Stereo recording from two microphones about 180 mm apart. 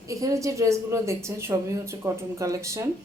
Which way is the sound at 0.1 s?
15° right (ahead or behind).